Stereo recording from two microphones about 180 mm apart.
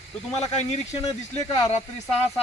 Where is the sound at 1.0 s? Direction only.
20° left (ahead or behind).